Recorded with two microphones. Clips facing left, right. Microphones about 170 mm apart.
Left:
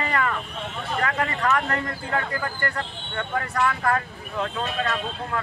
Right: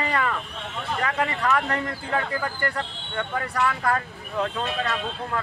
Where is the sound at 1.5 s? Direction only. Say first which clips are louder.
Even; 15° right (ahead or behind).